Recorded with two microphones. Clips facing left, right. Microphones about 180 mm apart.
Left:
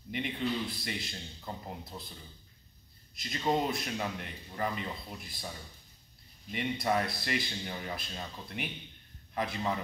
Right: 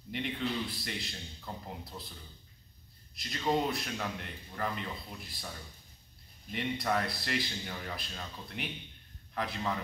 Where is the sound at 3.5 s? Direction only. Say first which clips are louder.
Even; 20° left (ahead or behind).